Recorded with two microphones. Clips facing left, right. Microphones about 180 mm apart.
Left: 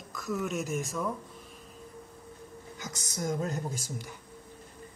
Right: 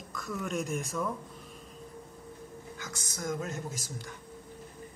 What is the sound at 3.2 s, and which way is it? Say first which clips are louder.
Speech: left 3 dB; 35° left (ahead or behind).